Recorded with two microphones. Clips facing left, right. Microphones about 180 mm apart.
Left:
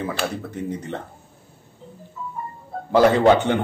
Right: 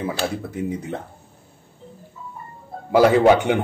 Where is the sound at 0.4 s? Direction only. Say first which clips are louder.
Right 2 dB; 10° right (ahead or behind).